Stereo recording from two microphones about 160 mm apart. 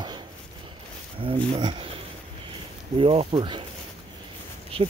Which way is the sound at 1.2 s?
30° right (ahead or behind).